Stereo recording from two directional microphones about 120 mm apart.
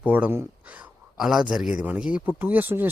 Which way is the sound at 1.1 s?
5° right (ahead or behind).